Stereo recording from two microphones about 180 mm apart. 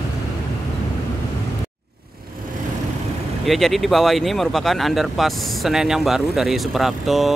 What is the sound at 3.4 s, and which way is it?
Speech, centre (ahead or behind).